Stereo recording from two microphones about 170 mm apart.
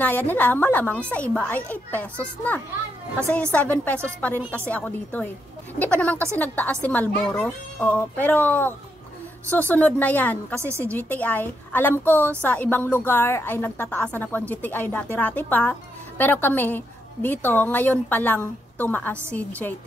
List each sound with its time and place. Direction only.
0.3 s a woman's voice: 10° left (ahead or behind)
10.6 s a woman's voice: 15° right (ahead or behind)
10.9 s a woman's voice: 10° left (ahead or behind)